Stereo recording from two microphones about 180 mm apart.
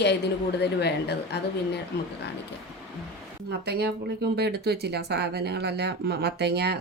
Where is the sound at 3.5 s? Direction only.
65° right (ahead or behind).